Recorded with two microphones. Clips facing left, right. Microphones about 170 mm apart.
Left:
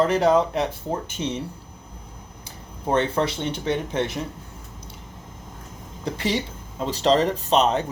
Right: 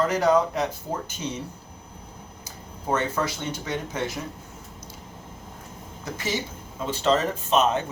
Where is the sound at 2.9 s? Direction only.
30° left (ahead or behind).